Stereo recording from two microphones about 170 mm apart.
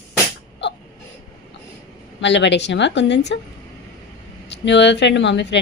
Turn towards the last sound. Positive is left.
turn(degrees=90)